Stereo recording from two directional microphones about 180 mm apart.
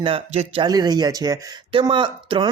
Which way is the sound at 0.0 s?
30° right (ahead or behind).